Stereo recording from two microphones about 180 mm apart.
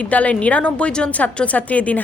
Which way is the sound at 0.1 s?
10° left (ahead or behind).